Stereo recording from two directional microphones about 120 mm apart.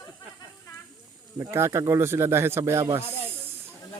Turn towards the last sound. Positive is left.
turn(degrees=-25)  # may be behind; listen again after turning